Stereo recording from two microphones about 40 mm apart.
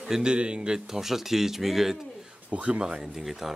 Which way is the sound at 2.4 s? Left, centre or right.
Right.